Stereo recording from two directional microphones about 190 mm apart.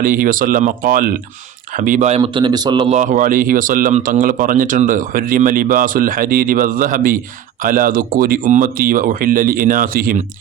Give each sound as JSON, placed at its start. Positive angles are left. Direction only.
{"t": 0.0, "sound": "speech", "side_deg": -45}
{"t": 2.9, "sound": "speech", "side_deg": -40}